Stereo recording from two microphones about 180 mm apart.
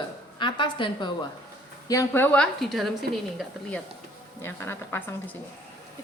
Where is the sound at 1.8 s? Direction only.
15° left (ahead or behind); by 3.5 s centre (ahead or behind).